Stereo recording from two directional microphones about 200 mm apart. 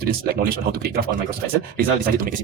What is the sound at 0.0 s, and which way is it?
Speech, 50° right (ahead or behind).